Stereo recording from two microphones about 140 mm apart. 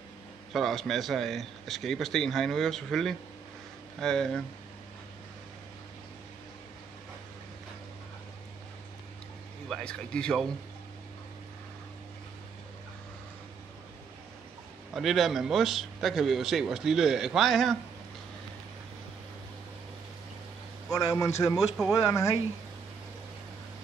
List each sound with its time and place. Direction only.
0.5 s speech: centre (ahead or behind)
9.7 s speech: 5° left (ahead or behind)
15.0 s speech: centre (ahead or behind)
20.9 s speech: 25° left (ahead or behind)
21.5 s speech: centre (ahead or behind)
22.0 s speech: 20° left (ahead or behind)